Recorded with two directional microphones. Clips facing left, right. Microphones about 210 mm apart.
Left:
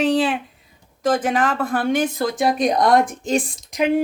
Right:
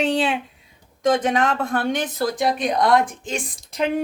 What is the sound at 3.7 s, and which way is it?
Speech, 10° left (ahead or behind).